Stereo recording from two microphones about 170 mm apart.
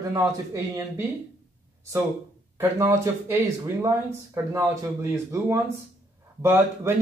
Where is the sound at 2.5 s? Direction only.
15° right (ahead or behind).